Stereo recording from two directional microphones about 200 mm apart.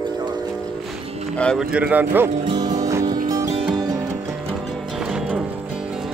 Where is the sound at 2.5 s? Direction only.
20° right (ahead or behind); by 6.1 s 5° right (ahead or behind).